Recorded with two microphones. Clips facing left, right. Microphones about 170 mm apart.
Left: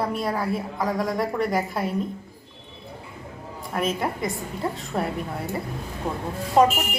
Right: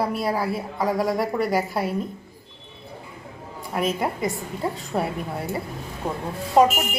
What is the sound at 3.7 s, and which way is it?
Speech, 5° right (ahead or behind).